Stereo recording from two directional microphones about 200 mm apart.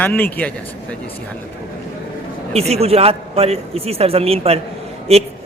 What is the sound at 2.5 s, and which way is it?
A man's voice, 30° right (ahead or behind).